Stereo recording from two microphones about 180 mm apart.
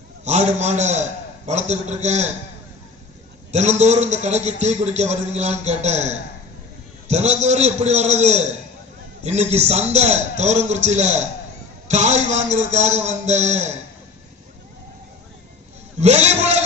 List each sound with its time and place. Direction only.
0.3 s a man's voice: 40° right (ahead or behind)
3.5 s a man's voice: 40° right (ahead or behind)
16.0 s a man's voice: 35° right (ahead or behind)